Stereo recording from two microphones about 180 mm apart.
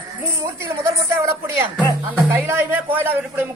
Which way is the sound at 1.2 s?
15° right (ahead or behind).